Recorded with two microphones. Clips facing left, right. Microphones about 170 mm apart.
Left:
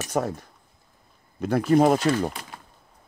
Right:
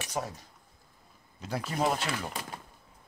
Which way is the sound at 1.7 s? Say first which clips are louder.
Left 12 dB; 50° left (ahead or behind).